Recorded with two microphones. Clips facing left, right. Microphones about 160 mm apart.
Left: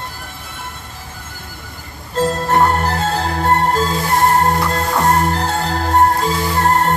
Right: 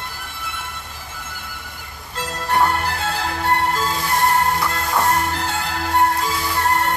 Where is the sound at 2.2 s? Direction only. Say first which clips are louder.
Left 5 dB; 40° left (ahead or behind).